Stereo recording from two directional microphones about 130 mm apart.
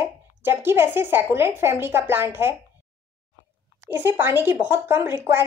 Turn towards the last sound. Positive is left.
turn(degrees=-15)  # may be behind; listen again after turning